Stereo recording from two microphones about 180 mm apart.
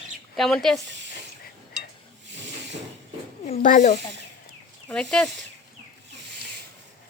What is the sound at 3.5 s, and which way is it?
Speech, 45° left (ahead or behind).